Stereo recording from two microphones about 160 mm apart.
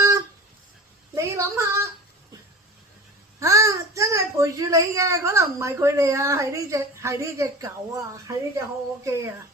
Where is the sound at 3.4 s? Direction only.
20° right (ahead or behind).